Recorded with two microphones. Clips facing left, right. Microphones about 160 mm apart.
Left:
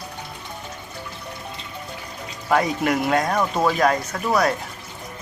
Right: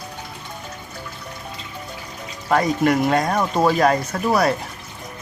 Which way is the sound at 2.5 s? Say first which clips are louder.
Right 3 dB; 5° left (ahead or behind).